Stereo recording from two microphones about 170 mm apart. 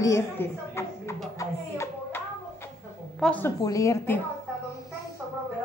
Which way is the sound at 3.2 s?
10° left (ahead or behind).